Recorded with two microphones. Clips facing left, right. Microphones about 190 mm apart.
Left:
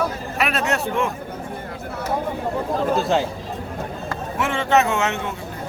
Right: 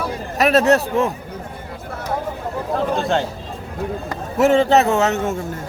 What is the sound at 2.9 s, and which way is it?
Speech, centre (ahead or behind).